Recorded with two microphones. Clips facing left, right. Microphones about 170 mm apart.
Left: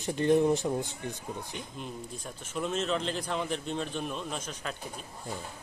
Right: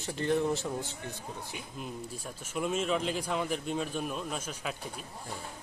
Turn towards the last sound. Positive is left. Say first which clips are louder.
# even
turn(degrees=-10)  # may be behind; listen again after turning